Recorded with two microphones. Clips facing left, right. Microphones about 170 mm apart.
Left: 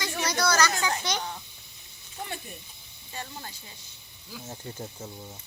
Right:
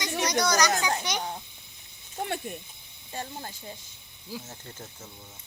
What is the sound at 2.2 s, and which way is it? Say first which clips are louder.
Speech: right 5 dB; 55° right (ahead or behind).